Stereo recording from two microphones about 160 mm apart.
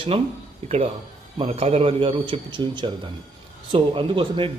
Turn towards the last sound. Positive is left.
turn(degrees=-35)  # may be behind; listen again after turning